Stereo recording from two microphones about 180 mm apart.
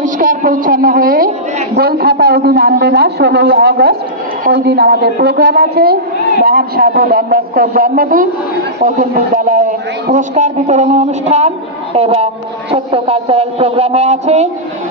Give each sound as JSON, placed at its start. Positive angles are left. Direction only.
{"t": 0.0, "sound": "a woman's voice", "side_deg": -45}